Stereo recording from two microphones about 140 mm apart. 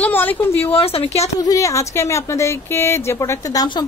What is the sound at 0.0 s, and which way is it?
Speech, 15° left (ahead or behind).